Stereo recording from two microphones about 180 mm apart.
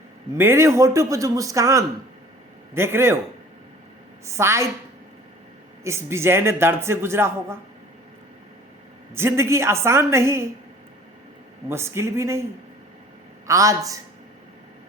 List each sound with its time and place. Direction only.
0.3 s a man's voice: 15° right (ahead or behind)
4.3 s a man's voice: 15° right (ahead or behind)
5.8 s a man's voice: 15° right (ahead or behind)
9.1 s a man's voice: 15° right (ahead or behind)
11.7 s a man's voice: 15° right (ahead or behind)
13.5 s a woman's voice: 20° right (ahead or behind)